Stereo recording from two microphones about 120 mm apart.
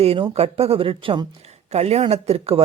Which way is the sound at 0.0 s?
50° right (ahead or behind).